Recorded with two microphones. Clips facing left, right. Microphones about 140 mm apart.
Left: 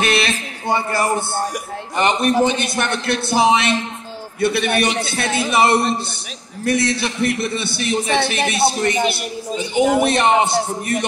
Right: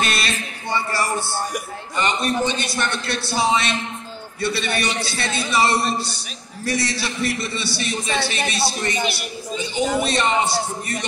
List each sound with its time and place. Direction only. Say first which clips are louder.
0.0 s music: left 5 dB; 55° left (ahead or behind)
2.0 s a man's voice: left 6 dB; 60° left (ahead or behind)